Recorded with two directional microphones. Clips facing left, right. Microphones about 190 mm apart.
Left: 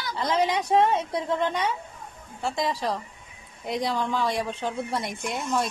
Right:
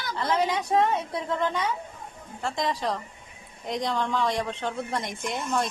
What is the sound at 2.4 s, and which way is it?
A woman's voice, 5° left (ahead or behind).